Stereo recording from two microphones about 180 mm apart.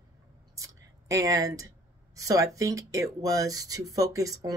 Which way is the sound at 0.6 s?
15° right (ahead or behind).